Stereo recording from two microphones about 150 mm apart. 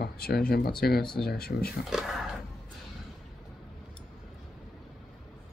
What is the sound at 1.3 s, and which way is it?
Speech, 90° left.